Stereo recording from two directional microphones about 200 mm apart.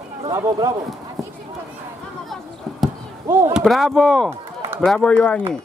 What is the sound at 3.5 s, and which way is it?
Speech, centre (ahead or behind).